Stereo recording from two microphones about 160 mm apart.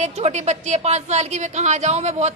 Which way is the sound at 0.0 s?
45° right (ahead or behind).